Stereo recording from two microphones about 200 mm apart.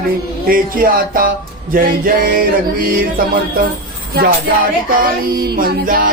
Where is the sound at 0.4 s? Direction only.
45° right (ahead or behind).